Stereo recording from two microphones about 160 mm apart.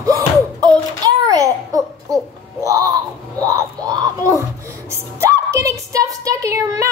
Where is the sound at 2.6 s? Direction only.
20° right (ahead or behind).